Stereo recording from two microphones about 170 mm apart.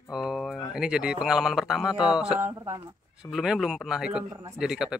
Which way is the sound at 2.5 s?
20° right (ahead or behind).